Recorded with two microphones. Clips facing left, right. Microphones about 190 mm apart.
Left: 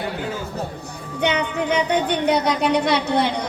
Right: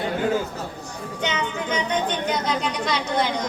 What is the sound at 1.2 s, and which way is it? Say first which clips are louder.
Speech: left 6 dB; 60° left (ahead or behind).